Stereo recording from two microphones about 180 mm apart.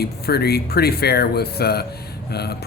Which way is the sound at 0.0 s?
60° left (ahead or behind).